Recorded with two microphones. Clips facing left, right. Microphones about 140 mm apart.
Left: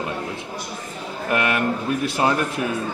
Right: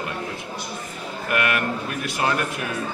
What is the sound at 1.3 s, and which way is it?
A man's voice, 25° left (ahead or behind).